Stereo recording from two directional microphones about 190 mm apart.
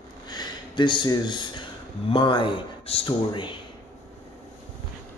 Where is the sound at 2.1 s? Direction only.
25° left (ahead or behind).